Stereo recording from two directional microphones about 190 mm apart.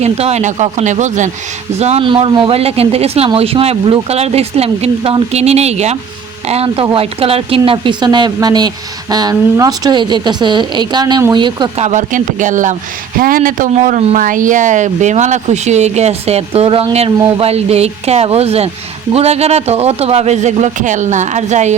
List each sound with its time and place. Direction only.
0.0 s speech: 35° right (ahead or behind)
11.9 s speech: 40° right (ahead or behind)